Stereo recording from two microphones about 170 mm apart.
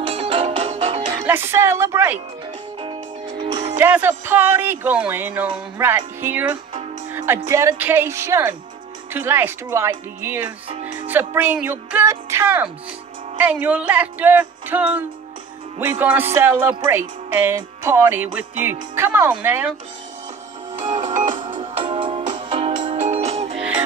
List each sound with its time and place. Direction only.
0.0 s music: 35° right (ahead or behind)
1.2 s speech: 15° right (ahead or behind)
2.8 s music: 30° right (ahead or behind)
3.8 s speech: 10° right (ahead or behind)
17.3 s music: 15° right (ahead or behind)
17.6 s speech: 15° right (ahead or behind)
20.8 s music: 45° right (ahead or behind)
21.5 s music: 30° right (ahead or behind)
22.9 s music: 40° right (ahead or behind)